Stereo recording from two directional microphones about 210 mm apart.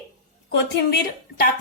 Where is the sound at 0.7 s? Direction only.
50° left (ahead or behind).